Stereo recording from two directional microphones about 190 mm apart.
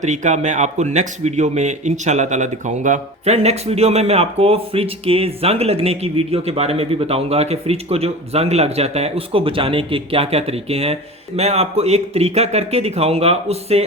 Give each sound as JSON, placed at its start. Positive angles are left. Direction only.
{"t": 0.0, "sound": "speech", "side_deg": -40}